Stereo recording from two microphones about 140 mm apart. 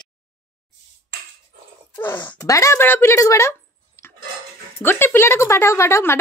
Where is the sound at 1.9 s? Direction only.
15° left (ahead or behind).